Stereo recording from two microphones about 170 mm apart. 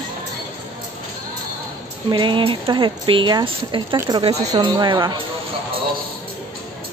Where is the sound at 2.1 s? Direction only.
30° right (ahead or behind).